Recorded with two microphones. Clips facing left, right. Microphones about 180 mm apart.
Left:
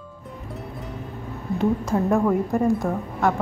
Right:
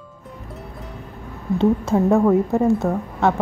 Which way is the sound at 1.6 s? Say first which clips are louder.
Right 4 dB; 25° right (ahead or behind).